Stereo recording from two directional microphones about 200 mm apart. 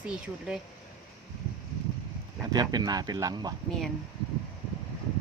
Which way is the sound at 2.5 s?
20° right (ahead or behind).